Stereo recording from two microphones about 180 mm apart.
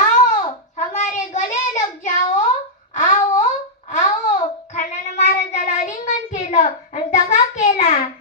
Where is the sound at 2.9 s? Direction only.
45° left (ahead or behind).